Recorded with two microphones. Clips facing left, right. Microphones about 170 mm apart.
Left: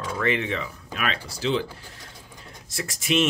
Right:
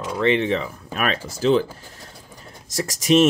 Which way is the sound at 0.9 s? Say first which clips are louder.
Right 5 dB; 45° right (ahead or behind).